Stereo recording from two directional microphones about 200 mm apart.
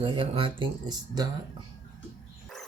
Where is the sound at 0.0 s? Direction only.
25° right (ahead or behind).